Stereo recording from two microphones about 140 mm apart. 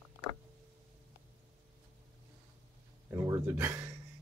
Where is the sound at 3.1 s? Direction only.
20° right (ahead or behind).